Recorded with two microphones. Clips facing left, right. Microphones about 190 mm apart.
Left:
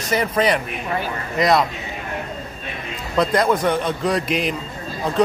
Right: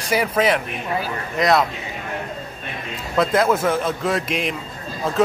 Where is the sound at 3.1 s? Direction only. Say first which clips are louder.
Even; 5° right (ahead or behind).